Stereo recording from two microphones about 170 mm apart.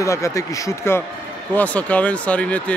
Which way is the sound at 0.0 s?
20° left (ahead or behind).